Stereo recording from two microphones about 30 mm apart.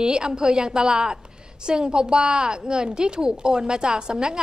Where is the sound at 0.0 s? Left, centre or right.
Right.